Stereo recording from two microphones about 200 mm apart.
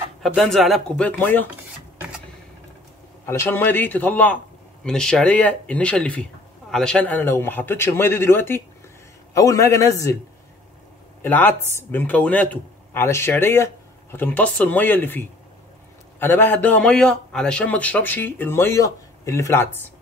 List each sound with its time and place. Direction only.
0.2 s speech: centre (ahead or behind)
3.3 s a man's voice: 10° left (ahead or behind)
11.2 s a man's voice: 10° left (ahead or behind)